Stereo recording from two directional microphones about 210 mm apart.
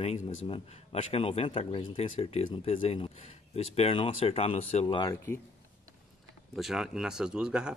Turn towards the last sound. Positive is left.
turn(degrees=-5)  # may be behind; listen again after turning